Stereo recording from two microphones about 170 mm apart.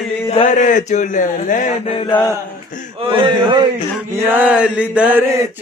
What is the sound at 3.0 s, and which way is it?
Speech, 30° right (ahead or behind).